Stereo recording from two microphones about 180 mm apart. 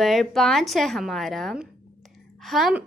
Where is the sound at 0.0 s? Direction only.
Centre (ahead or behind).